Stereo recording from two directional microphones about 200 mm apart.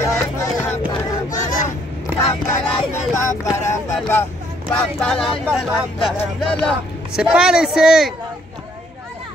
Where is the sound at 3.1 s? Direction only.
15° left (ahead or behind).